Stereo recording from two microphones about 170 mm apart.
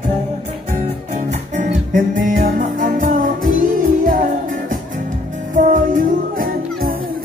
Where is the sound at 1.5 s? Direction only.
50° right (ahead or behind).